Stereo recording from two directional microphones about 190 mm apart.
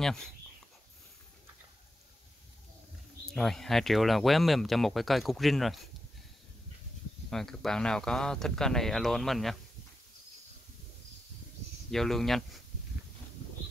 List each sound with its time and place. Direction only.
3.3 s speech: centre (ahead or behind)
7.2 s speech: centre (ahead or behind)
11.9 s speech: centre (ahead or behind)